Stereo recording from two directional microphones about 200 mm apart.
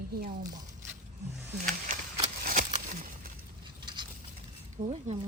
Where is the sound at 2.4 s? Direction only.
40° right (ahead or behind).